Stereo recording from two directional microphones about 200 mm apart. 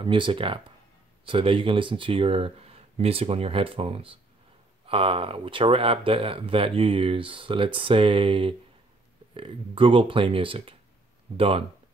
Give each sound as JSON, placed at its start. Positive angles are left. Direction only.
{"t": 0.0, "sound": "speech", "side_deg": -25}